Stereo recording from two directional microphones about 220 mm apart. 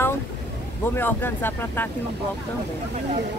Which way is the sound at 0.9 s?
10° left (ahead or behind).